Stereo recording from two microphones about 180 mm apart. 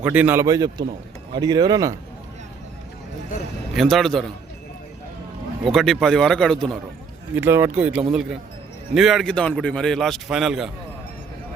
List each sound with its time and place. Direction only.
0.0 s speech: 10° right (ahead or behind)
3.8 s a man's voice: centre (ahead or behind)
5.6 s a man's voice: centre (ahead or behind)
7.3 s a man's voice: 10° right (ahead or behind)